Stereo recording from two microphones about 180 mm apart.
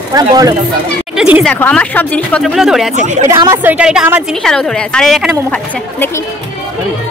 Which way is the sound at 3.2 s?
15° right (ahead or behind).